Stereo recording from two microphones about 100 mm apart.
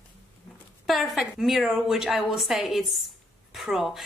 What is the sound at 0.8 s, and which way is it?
A woman's voice, centre (ahead or behind).